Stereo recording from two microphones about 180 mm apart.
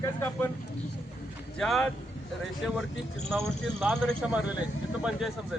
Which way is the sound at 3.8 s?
5° left (ahead or behind).